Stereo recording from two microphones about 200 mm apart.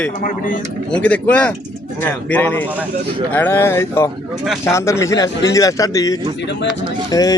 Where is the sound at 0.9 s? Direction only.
5° left (ahead or behind).